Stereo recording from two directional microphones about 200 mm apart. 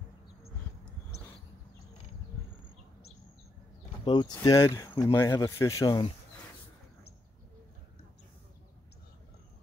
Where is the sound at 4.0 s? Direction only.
25° left (ahead or behind).